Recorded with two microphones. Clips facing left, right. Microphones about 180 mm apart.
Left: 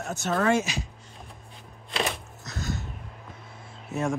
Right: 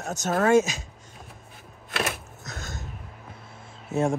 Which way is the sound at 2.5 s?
50° right (ahead or behind).